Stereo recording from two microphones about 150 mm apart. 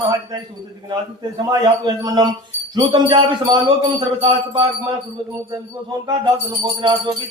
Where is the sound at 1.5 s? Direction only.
25° right (ahead or behind).